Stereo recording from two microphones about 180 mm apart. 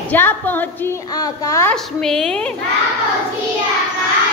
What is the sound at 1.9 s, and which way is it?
Speech, 5° left (ahead or behind).